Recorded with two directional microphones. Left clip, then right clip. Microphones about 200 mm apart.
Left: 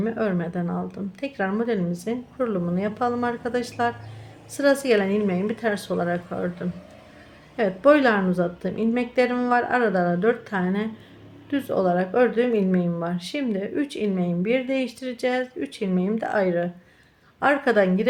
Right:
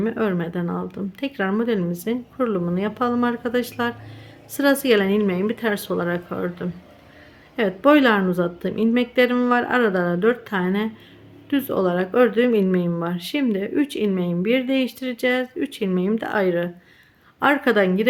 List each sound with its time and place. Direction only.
0.0 s speech: 15° right (ahead or behind)